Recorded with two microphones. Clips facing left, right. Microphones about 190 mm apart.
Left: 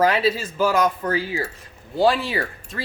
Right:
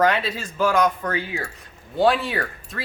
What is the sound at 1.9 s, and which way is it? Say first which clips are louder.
Speech: even; centre (ahead or behind).